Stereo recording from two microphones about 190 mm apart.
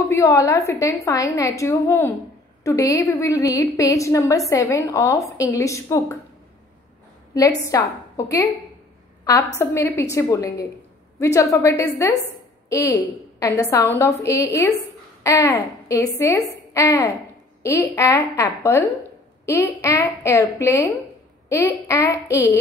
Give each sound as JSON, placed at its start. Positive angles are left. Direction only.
{"t": 0.1, "sound": "a woman's voice", "side_deg": 15}
{"t": 7.6, "sound": "a woman's voice", "side_deg": 15}
{"t": 9.6, "sound": "a woman's voice", "side_deg": 15}